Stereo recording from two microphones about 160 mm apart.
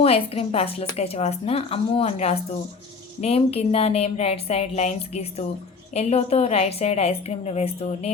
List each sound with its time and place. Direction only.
0.0 s speech: 40° left (ahead or behind)